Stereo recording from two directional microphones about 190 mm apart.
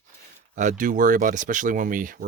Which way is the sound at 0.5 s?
40° right (ahead or behind).